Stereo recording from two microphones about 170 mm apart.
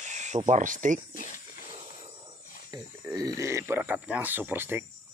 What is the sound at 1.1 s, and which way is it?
Speech, 50° left (ahead or behind).